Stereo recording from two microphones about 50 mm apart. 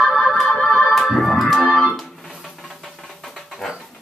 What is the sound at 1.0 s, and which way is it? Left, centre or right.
Organ, centre.